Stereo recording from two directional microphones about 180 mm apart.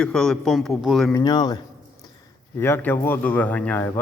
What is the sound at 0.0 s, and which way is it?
A man's voice, 5° left (ahead or behind).